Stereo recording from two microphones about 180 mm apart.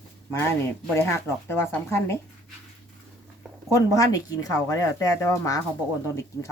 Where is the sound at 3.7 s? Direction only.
15° left (ahead or behind).